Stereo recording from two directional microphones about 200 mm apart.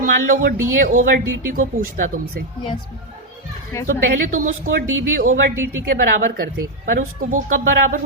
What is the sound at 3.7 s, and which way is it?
Speech, 15° left (ahead or behind).